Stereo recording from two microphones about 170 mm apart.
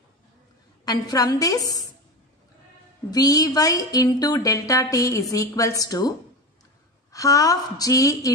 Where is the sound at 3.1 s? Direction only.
20° left (ahead or behind).